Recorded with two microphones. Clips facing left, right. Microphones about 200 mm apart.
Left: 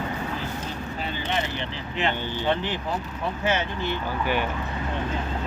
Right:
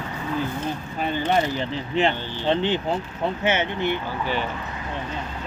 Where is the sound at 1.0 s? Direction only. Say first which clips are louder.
Right 8 dB; 45° right (ahead or behind).